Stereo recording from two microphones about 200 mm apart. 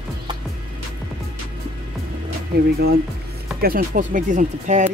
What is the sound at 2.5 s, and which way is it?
Speech, 50° right (ahead or behind).